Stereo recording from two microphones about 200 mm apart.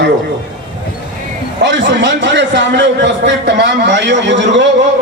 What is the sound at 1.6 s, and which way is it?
A man's voice, 60° right (ahead or behind).